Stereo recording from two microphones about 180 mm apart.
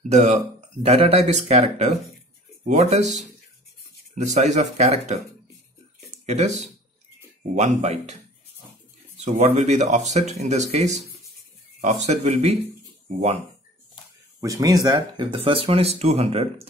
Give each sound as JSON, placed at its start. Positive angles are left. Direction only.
{"t": 0.1, "sound": "speech", "side_deg": -40}
{"t": 4.2, "sound": "speech", "side_deg": -40}
{"t": 6.2, "sound": "speech", "side_deg": -40}
{"t": 9.2, "sound": "speech", "side_deg": -40}
{"t": 14.4, "sound": "speech", "side_deg": -20}